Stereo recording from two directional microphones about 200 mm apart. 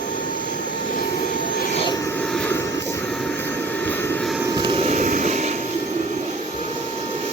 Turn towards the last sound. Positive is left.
turn(degrees=-35)  # may be behind; listen again after turning